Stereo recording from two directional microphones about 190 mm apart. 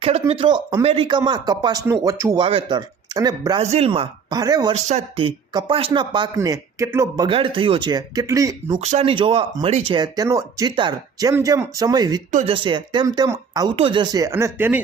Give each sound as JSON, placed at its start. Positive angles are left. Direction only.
{"t": 0.0, "sound": "speech", "side_deg": -30}
{"t": 2.4, "sound": "speech", "side_deg": -25}
{"t": 3.6, "sound": "speech", "side_deg": -35}
{"t": 4.7, "sound": "speech", "side_deg": -35}
{"t": 7.3, "sound": "speech", "side_deg": -30}
{"t": 8.8, "sound": "speech", "side_deg": -35}
{"t": 12.3, "sound": "speech", "side_deg": -40}
{"t": 12.5, "sound": "speech", "side_deg": -25}